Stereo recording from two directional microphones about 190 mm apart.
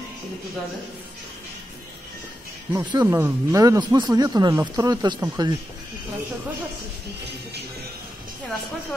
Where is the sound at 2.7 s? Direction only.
15° right (ahead or behind).